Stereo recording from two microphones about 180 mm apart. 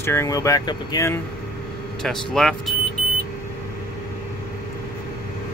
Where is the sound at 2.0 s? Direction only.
5° left (ahead or behind).